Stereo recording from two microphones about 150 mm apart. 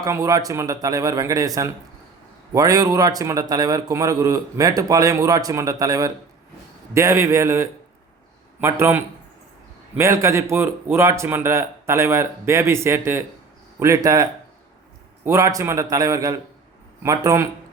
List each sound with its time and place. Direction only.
0.0 s a man's voice: 20° right (ahead or behind)